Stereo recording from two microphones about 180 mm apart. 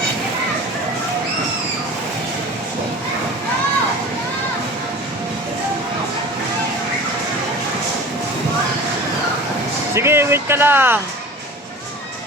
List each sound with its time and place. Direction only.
9.9 s music: 15° right (ahead or behind)